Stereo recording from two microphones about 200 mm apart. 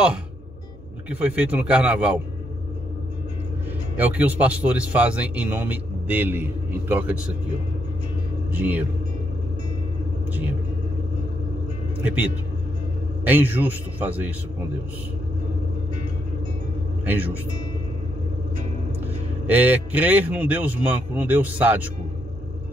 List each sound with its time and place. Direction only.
1.1 s speech: 5° right (ahead or behind)
3.9 s speech: 10° right (ahead or behind)
8.5 s speech: 10° right (ahead or behind)
12.0 s speech: 5° right (ahead or behind)
17.0 s speech: 10° right (ahead or behind)
19.4 s speech: 10° right (ahead or behind)